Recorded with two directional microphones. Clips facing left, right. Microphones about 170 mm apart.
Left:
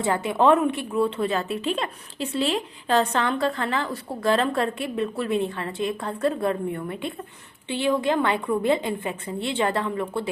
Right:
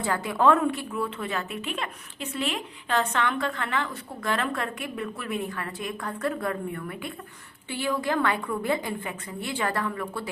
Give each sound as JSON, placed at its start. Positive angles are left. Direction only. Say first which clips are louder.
{"t": 0.0, "sound": "a woman's voice", "louder": "left 3 dB", "side_deg": 25}